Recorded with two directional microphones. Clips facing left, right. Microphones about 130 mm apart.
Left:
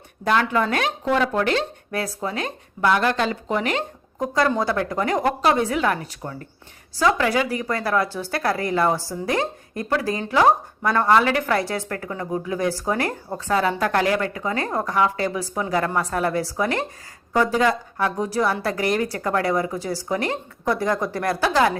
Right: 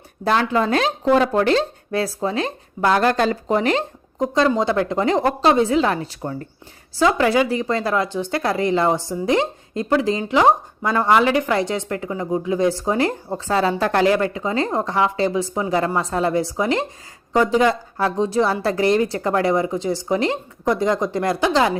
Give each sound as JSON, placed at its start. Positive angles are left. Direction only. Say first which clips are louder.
{"t": 0.3, "sound": "speech", "louder": "right 2 dB", "side_deg": -30}
{"t": 4.2, "sound": "speech", "louder": "right 3 dB", "side_deg": -20}